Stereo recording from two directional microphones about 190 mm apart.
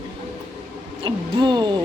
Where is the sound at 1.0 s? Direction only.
25° right (ahead or behind).